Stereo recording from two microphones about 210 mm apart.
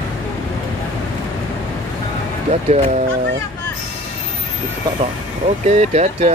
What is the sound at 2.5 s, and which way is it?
Speech, 30° right (ahead or behind).